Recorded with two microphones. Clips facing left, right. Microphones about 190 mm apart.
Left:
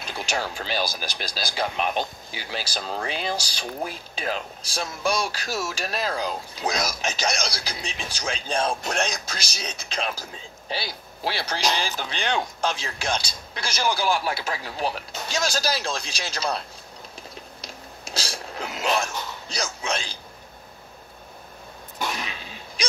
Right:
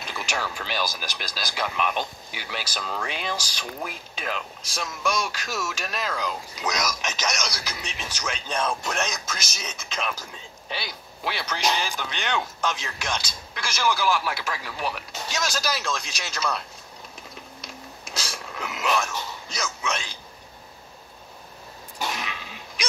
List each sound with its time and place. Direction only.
0.3 s speech: 30° left (ahead or behind)
17.6 s a sound: 30° left (ahead or behind)
22.2 s sneeze: 30° left (ahead or behind)